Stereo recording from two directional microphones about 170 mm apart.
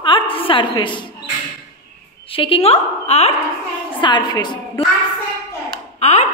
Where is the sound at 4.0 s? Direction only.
25° left (ahead or behind).